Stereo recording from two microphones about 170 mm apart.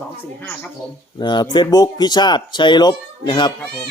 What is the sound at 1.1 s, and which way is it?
Speech, 25° left (ahead or behind).